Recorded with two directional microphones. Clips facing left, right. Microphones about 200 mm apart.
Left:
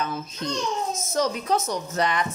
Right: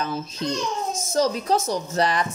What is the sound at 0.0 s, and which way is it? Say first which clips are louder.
Speech: right 2 dB; 30° right (ahead or behind).